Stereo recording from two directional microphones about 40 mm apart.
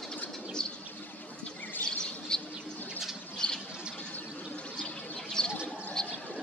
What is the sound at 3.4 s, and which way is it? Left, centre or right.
Bird, left.